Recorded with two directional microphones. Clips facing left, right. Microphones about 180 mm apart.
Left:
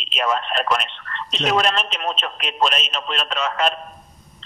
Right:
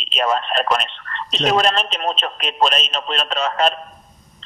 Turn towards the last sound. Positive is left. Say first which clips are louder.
# right 3 dB
turn(degrees=-35)  # may be behind; listen again after turning